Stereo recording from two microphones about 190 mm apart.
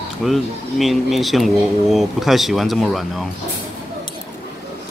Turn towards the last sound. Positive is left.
turn(degrees=0)  # may be behind; listen again after turning